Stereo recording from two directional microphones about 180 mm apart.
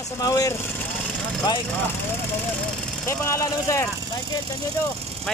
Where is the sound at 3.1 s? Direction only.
15° left (ahead or behind).